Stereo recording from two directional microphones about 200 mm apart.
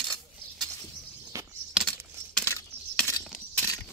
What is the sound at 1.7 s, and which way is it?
Coin, centre (ahead or behind).